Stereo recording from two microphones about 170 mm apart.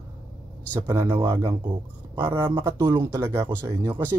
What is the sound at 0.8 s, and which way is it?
Speech, 15° right (ahead or behind).